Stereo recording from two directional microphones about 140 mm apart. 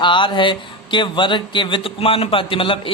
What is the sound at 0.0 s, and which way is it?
Speech, 35° left (ahead or behind).